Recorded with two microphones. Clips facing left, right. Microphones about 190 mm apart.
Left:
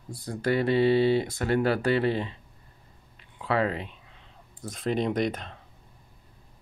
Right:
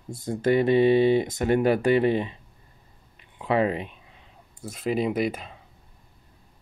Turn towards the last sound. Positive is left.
turn(degrees=-5)  # may be behind; listen again after turning